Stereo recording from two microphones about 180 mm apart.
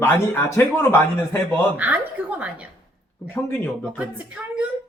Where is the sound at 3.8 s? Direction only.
5° right (ahead or behind).